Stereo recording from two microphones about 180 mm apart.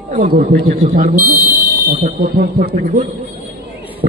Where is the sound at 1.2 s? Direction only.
20° right (ahead or behind).